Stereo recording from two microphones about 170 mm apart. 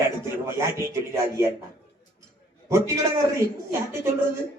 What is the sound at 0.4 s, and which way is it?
Speech, 15° right (ahead or behind).